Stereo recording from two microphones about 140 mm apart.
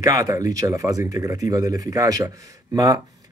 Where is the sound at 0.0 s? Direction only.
25° right (ahead or behind).